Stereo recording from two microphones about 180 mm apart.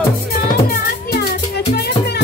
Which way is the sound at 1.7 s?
65° left (ahead or behind).